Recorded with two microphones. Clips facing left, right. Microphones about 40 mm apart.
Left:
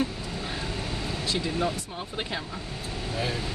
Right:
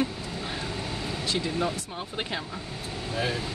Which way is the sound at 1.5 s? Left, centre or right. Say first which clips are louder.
Even; centre.